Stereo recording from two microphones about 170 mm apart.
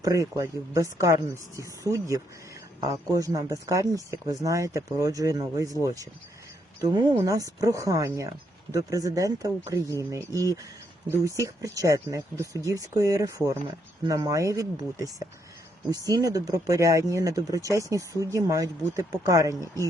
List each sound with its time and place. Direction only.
0.0 s speech: 20° right (ahead or behind)
11.3 s speech: 20° right (ahead or behind)
15.9 s speech: 20° right (ahead or behind)